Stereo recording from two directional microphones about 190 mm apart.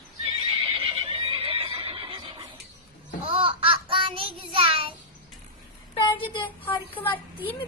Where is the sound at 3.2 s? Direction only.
30° right (ahead or behind).